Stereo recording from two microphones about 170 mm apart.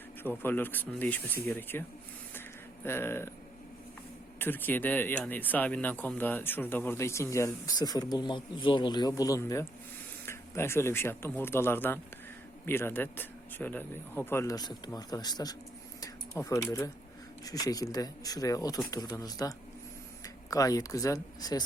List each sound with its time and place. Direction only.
0.2 s speech: 10° left (ahead or behind)
2.8 s speech: 15° left (ahead or behind)
4.4 s speech: 10° left (ahead or behind)
16.0 s a sound: 20° left (ahead or behind)
17.4 s speech: 20° left (ahead or behind)